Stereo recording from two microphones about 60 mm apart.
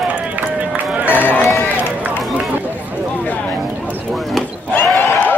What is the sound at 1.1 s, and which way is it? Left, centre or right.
Run, left.